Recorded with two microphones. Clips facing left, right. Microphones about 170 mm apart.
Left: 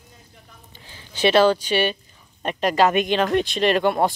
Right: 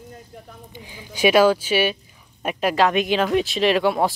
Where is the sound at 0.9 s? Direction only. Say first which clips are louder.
Right 1 dB; 10° right (ahead or behind).